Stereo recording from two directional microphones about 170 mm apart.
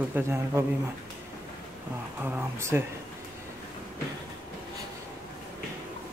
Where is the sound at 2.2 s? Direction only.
10° right (ahead or behind).